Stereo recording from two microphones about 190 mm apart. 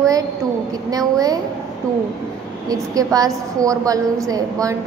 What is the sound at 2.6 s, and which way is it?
A woman's voice, 20° right (ahead or behind).